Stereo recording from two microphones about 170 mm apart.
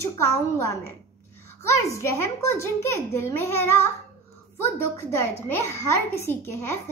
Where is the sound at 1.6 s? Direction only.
15° left (ahead or behind).